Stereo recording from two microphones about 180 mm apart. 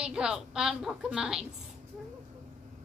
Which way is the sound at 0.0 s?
5° right (ahead or behind).